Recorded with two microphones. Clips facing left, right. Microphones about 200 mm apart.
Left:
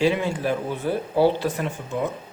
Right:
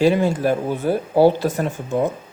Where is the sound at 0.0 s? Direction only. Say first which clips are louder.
Right 5 dB; 45° right (ahead or behind).